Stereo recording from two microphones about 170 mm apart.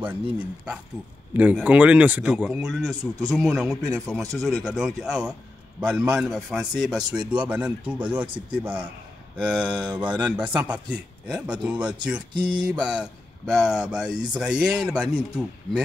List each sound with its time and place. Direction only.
0.0 s speech: 10° right (ahead or behind)
3.0 s a man's voice: 20° right (ahead or behind)
3.3 s speech: 5° right (ahead or behind)